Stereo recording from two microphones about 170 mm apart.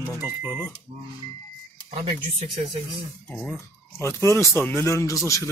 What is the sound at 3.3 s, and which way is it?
Speech, 5° left (ahead or behind).